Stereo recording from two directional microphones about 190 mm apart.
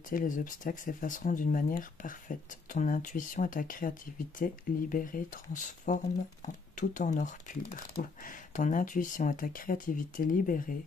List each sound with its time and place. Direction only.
0.1 s speech: 45° left (ahead or behind)